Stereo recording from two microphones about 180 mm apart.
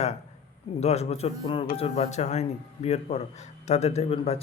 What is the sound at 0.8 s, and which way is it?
A man's voice, 35° left (ahead or behind).